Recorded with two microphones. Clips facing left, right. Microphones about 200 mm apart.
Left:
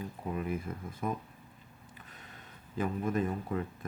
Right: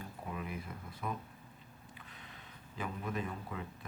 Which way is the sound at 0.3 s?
45° left (ahead or behind).